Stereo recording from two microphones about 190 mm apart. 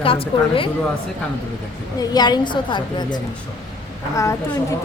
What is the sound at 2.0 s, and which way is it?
A woman's voice, 20° left (ahead or behind).